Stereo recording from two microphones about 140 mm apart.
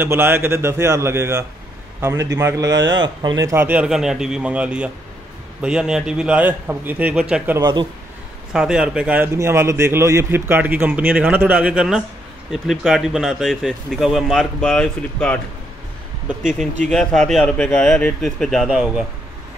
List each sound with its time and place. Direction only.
0.0 s a man's voice: 15° right (ahead or behind)
3.6 s a man's voice: 10° right (ahead or behind)
8.5 s a man's voice: 5° right (ahead or behind)
16.8 s speech: 5° left (ahead or behind)